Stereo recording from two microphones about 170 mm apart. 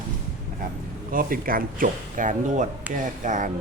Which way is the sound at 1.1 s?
55° right (ahead or behind).